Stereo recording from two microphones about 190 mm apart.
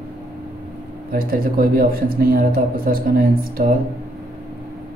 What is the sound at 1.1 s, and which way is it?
Speech, 50° right (ahead or behind).